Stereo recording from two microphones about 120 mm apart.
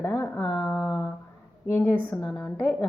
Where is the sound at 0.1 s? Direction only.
5° left (ahead or behind).